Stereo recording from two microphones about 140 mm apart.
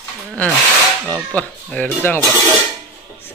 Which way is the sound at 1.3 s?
10° left (ahead or behind).